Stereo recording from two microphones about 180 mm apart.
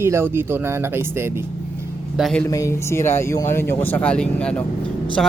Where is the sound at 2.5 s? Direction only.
15° left (ahead or behind).